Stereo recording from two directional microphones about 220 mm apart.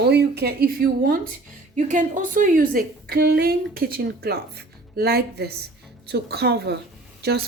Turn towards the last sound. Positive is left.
turn(degrees=-45)  # may be behind; listen again after turning